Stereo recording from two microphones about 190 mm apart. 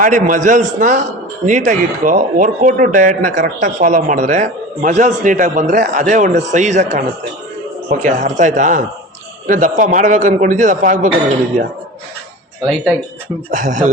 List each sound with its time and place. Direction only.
0.0 s a man's voice: 45° right (ahead or behind)
13.5 s a man's voice: 45° right (ahead or behind)